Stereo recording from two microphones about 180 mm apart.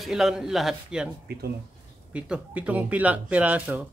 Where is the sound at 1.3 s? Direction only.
60° right (ahead or behind).